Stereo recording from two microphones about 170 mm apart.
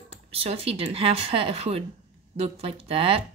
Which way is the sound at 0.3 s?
35° right (ahead or behind).